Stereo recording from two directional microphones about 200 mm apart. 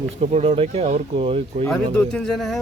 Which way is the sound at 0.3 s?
30° right (ahead or behind).